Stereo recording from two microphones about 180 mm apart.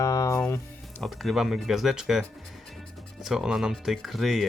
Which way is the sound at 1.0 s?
Centre (ahead or behind).